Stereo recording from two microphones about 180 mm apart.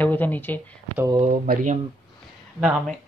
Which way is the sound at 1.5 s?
50° right (ahead or behind).